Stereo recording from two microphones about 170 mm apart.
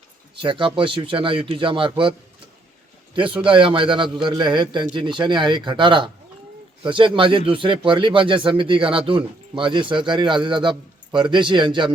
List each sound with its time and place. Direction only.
0.3 s speech: 30° right (ahead or behind)
3.2 s speech: 30° right (ahead or behind)